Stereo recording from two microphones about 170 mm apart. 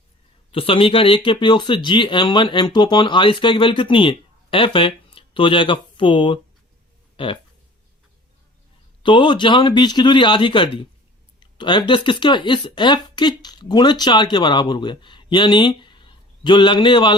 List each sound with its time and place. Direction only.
0.5 s speech: 30° left (ahead or behind)
9.0 s speech: 30° left (ahead or behind)